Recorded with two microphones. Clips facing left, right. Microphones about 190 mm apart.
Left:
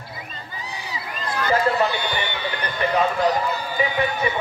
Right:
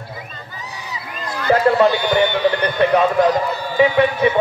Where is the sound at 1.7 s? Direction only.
65° right (ahead or behind).